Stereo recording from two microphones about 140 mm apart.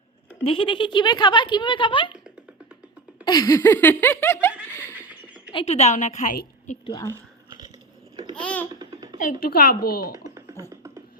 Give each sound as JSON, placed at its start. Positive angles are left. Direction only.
{"t": 0.4, "sound": "speech", "side_deg": 40}
{"t": 3.2, "sound": "laughter", "side_deg": 25}
{"t": 5.5, "sound": "a woman's voice", "side_deg": 50}
{"t": 8.1, "sound": "babbling", "side_deg": -35}
{"t": 8.4, "sound": "babbling", "side_deg": 10}
{"t": 8.8, "sound": "a sound", "side_deg": -25}
{"t": 9.1, "sound": "speech", "side_deg": 80}
{"t": 10.2, "sound": "beatboxing", "side_deg": -20}